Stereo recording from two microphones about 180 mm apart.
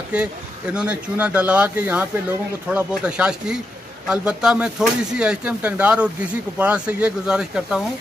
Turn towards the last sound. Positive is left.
turn(degrees=-5)  # may be behind; listen again after turning